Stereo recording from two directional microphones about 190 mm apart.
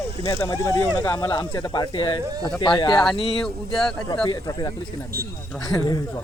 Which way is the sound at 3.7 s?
Centre (ahead or behind).